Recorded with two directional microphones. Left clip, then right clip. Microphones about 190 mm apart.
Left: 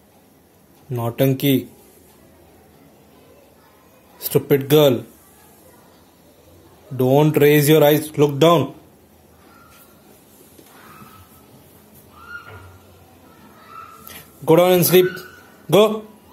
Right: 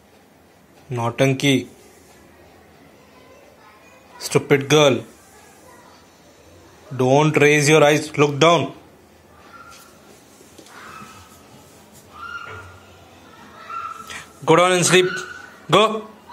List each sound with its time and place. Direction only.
0.8 s speech: 20° left (ahead or behind)
4.2 s a man's voice: 20° left (ahead or behind)
7.0 s speech: 25° left (ahead or behind)
14.0 s a sound: 15° left (ahead or behind)